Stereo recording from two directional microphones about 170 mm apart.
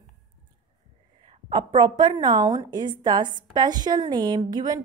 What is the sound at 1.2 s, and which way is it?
A woman's voice, 30° right (ahead or behind).